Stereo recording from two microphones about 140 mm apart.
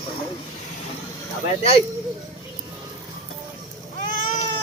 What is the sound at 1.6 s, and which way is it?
Speech, 45° left (ahead or behind).